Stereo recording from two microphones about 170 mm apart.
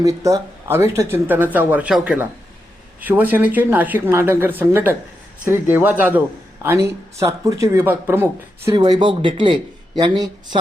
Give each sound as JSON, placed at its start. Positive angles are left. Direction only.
{"t": 0.0, "sound": "speech", "side_deg": -20}
{"t": 8.7, "sound": "speech", "side_deg": -30}